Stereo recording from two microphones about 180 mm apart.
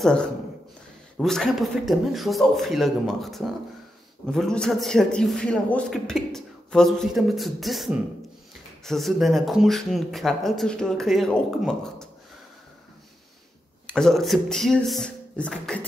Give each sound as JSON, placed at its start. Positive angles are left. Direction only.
{"t": 0.0, "sound": "a man's voice", "side_deg": 5}
{"t": 13.8, "sound": "a man's voice", "side_deg": 5}